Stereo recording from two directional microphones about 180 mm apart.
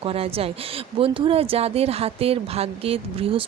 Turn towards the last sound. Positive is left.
turn(degrees=-30)  # may be behind; listen again after turning